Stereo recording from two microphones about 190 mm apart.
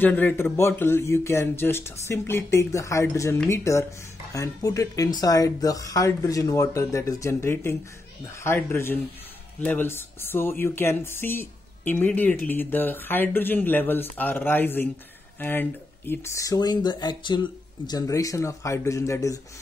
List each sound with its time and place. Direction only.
0.0 s speech: 10° left (ahead or behind)